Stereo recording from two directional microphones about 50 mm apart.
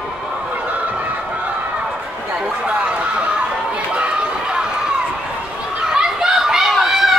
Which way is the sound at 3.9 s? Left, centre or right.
Right.